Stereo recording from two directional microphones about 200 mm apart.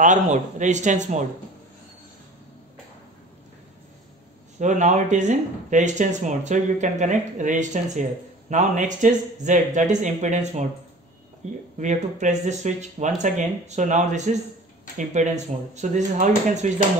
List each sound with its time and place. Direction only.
0.0 s speech: 40° right (ahead or behind)
4.6 s speech: 35° right (ahead or behind)